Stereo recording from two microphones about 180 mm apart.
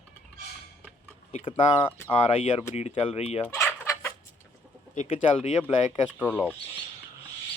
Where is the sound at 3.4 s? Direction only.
15° left (ahead or behind).